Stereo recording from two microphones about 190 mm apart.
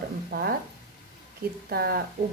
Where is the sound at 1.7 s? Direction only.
55° right (ahead or behind).